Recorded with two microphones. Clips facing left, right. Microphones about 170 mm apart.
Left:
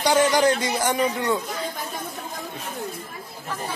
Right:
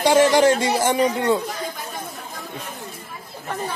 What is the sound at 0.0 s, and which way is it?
Speech, 25° right (ahead or behind).